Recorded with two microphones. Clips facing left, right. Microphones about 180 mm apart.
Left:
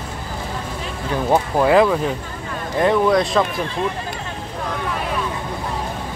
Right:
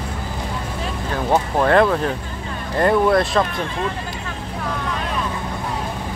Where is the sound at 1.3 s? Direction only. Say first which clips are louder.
Left 1 dB; 5° left (ahead or behind).